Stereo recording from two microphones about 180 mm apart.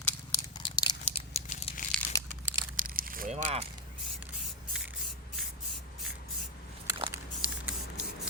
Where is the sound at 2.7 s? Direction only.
50° right (ahead or behind).